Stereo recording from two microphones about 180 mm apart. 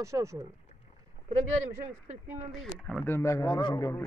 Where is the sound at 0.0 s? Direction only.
15° right (ahead or behind).